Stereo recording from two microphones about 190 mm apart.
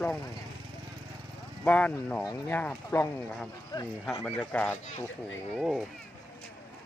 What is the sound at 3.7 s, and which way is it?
Speech, 20° left (ahead or behind).